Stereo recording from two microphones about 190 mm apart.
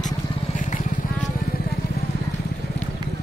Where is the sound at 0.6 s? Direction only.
45° left (ahead or behind).